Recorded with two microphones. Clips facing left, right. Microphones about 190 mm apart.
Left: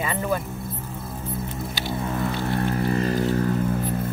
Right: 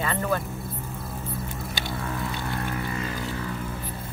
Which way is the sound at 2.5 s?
35° left (ahead or behind).